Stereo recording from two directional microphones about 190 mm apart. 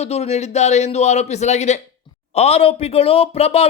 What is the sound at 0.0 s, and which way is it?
Speech, 35° left (ahead or behind).